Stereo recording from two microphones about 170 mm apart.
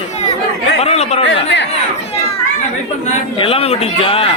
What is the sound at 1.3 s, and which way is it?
Speech, 90° left.